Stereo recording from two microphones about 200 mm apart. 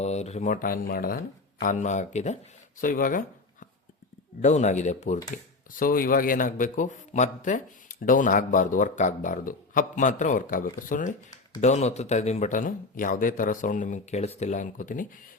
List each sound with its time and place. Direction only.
0.0 s a man's voice: 35° left (ahead or behind)